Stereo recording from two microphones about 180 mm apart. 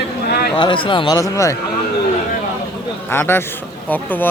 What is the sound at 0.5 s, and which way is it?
Speech, 30° left (ahead or behind).